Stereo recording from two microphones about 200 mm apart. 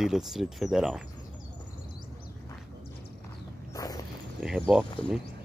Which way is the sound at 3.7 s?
20° left (ahead or behind).